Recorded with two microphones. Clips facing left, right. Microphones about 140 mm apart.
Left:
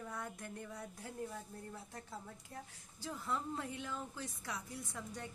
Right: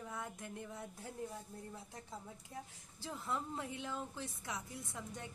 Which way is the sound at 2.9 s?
25° right (ahead or behind).